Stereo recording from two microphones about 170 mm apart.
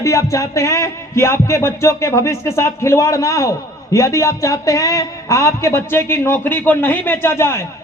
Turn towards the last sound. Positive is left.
turn(degrees=15)  # may be behind; listen again after turning